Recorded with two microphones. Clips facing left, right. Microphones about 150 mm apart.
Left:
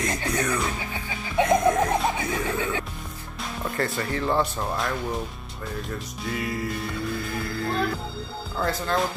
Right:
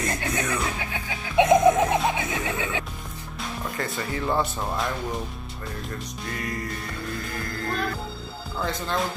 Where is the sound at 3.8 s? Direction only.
Centre (ahead or behind).